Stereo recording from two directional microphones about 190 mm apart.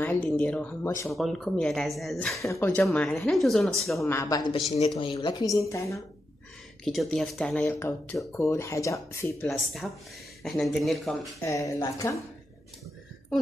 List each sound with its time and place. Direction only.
0.0 s speech: 10° left (ahead or behind)
1.1 s speech: centre (ahead or behind)
2.4 s speech: 10° left (ahead or behind)
4.0 s speech: 15° left (ahead or behind)
6.8 s speech: centre (ahead or behind)
9.8 s speech: centre (ahead or behind)
11.4 s speech: 15° left (ahead or behind)